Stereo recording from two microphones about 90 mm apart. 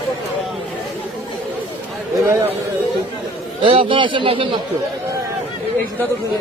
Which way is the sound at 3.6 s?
80° right.